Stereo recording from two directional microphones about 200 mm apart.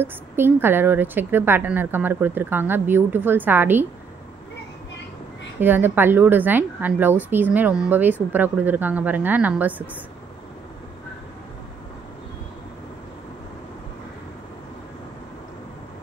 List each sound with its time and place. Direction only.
0.0 s a woman's voice: 10° right (ahead or behind)
5.6 s a woman's voice: 10° right (ahead or behind)